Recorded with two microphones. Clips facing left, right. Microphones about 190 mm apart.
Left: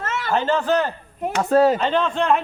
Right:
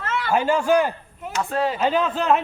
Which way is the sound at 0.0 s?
45° left (ahead or behind).